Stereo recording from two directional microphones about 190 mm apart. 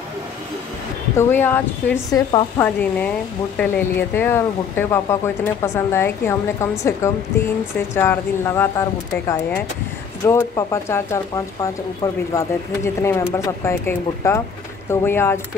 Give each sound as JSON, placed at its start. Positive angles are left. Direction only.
{"t": 1.1, "sound": "speech", "side_deg": 10}
{"t": 10.2, "sound": "speech", "side_deg": 15}